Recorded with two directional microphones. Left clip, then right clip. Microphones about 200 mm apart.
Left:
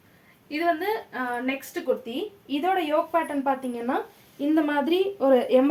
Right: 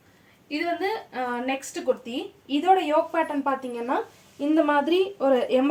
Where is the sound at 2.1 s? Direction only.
15° left (ahead or behind).